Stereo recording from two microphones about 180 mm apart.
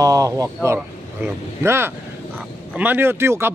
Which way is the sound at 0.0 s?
20° right (ahead or behind).